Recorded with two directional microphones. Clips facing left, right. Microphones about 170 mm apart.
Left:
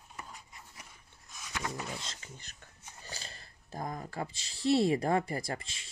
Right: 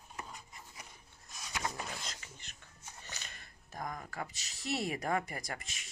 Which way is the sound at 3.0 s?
30° left (ahead or behind).